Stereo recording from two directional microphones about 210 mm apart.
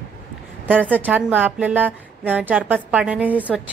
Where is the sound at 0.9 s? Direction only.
10° right (ahead or behind).